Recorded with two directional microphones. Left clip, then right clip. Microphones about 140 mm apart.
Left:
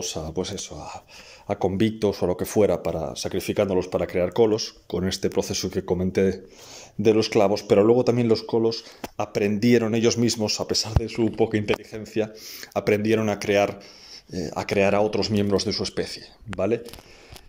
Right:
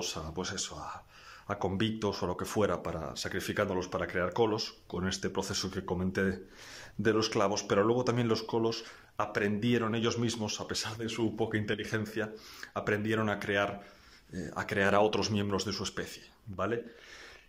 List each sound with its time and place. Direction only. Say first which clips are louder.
0.0 s speech: left 8 dB; 25° left (ahead or behind)
11.1 s speech: left 9 dB; 15° left (ahead or behind)
14.8 s speech: left 6 dB; centre (ahead or behind)
15.3 s speech: left 10 dB; 20° left (ahead or behind)